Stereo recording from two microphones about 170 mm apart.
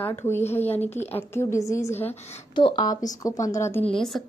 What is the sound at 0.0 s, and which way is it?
A woman's voice, 10° left (ahead or behind).